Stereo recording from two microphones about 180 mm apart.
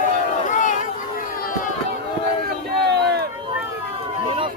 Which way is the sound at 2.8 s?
65° right (ahead or behind).